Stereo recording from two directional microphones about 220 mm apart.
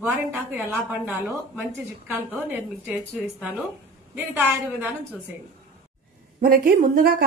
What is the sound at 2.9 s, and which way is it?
A woman's voice, 5° right (ahead or behind).